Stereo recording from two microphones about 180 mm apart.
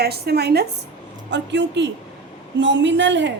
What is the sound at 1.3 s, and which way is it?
A woman's voice, 80° right.